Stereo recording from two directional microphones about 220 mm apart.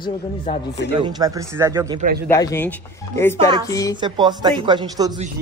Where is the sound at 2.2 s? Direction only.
15° left (ahead or behind).